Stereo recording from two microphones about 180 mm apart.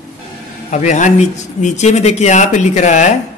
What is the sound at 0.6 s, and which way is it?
Speech, 40° left (ahead or behind).